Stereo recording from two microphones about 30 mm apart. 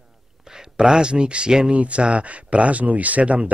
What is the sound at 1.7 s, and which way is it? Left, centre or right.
Speech, right.